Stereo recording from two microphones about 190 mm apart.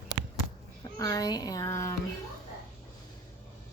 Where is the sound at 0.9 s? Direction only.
20° left (ahead or behind).